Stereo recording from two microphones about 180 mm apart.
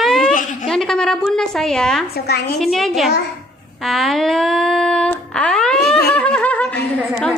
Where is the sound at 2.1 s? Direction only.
60° left (ahead or behind).